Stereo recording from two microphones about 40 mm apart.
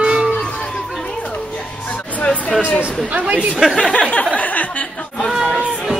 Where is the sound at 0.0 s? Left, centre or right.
Right.